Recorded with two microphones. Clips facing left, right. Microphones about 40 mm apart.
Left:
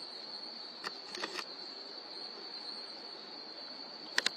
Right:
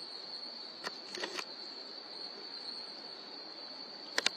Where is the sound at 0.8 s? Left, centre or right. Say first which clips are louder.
Even; right.